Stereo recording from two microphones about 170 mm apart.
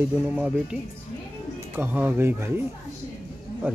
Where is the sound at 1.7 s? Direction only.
10° right (ahead or behind).